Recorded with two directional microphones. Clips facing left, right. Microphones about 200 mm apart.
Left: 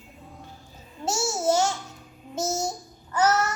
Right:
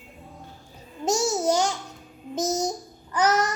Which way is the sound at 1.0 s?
15° right (ahead or behind).